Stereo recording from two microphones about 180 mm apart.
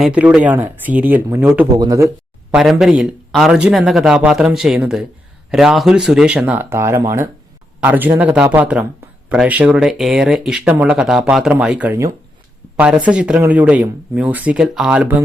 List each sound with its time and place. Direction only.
0.0 s speech: 5° right (ahead or behind)
1.7 s speech: 20° right (ahead or behind)
2.5 s speech: 5° right (ahead or behind)